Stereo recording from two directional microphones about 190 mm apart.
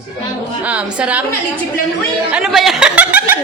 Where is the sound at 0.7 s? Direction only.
5° right (ahead or behind).